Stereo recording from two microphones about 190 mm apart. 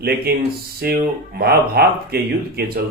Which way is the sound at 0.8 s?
55° right (ahead or behind).